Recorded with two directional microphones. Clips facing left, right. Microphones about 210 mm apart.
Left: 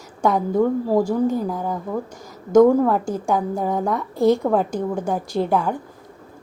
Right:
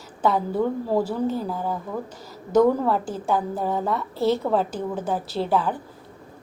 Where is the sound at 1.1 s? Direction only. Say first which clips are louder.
Left 5 dB; 15° left (ahead or behind).